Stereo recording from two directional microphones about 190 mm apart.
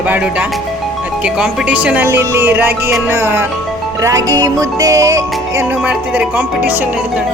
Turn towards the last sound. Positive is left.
turn(degrees=-10)  # may be behind; listen again after turning